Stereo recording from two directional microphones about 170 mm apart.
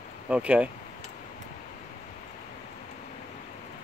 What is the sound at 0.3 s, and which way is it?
Speech, 5° right (ahead or behind).